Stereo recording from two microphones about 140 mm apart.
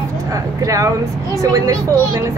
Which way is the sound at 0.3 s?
25° right (ahead or behind).